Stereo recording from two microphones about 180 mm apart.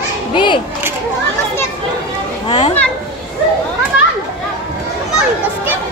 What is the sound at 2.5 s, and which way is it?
Speech, 30° left (ahead or behind).